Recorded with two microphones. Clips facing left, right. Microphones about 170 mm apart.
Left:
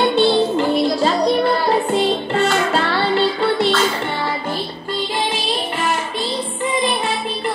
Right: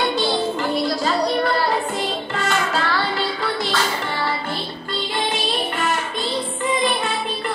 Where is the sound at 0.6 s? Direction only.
30° left (ahead or behind).